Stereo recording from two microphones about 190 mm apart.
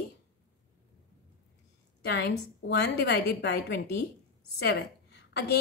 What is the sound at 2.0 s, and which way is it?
A woman's voice, 60° left (ahead or behind).